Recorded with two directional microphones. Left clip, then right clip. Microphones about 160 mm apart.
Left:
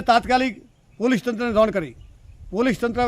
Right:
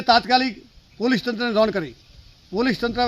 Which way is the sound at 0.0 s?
20° left (ahead or behind).